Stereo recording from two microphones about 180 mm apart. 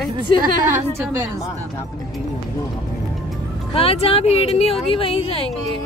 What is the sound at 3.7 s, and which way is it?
Speech, 30° left (ahead or behind).